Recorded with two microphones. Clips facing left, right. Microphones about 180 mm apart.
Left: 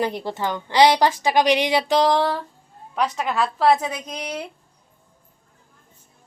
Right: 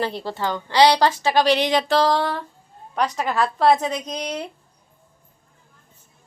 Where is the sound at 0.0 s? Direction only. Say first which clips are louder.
Left 1 dB; 15° left (ahead or behind).